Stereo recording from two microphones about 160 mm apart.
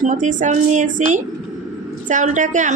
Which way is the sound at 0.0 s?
50° right (ahead or behind).